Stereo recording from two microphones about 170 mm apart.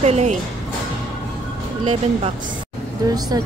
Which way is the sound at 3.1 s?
20° right (ahead or behind).